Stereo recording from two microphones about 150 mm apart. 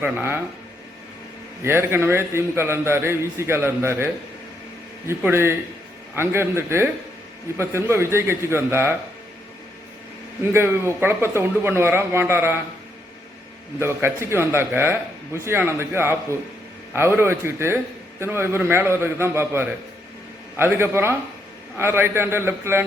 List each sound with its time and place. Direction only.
0.0 s a man's voice: 15° right (ahead or behind)
1.6 s a man's voice: 15° right (ahead or behind)
10.5 s a man's voice: 15° right (ahead or behind)
13.7 s a man's voice: 15° right (ahead or behind)